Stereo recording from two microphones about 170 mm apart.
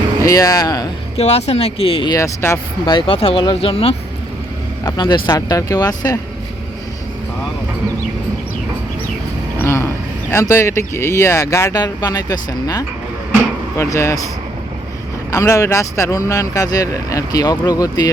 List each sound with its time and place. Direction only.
0.2 s speech: 20° left (ahead or behind)
1.1 s speech: 40° left (ahead or behind); by 6.1 s 25° left (ahead or behind)
9.6 s a sound: 15° left (ahead or behind)
10.3 s speech: 15° left (ahead or behind)
15.3 s speech: 20° left (ahead or behind)